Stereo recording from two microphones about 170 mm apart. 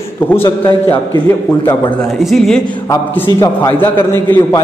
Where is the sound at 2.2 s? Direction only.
Centre (ahead or behind).